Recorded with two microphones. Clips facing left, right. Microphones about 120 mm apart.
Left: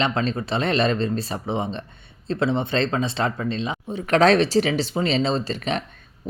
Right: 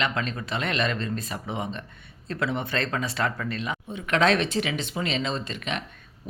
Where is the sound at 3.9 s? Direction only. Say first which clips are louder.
Left 6 dB; 35° left (ahead or behind).